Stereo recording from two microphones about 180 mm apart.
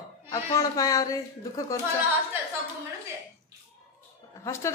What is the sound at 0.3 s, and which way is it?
Speech, 20° left (ahead or behind).